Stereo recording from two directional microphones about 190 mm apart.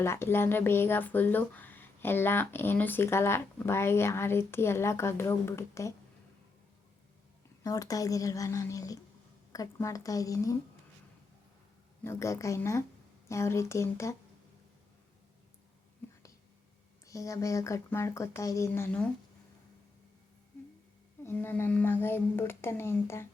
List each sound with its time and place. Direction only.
0.0 s speech: 15° left (ahead or behind)
7.6 s speech: 20° left (ahead or behind)
12.0 s speech: 15° left (ahead or behind)
17.1 s speech: 15° left (ahead or behind)
21.2 s speech: 10° left (ahead or behind)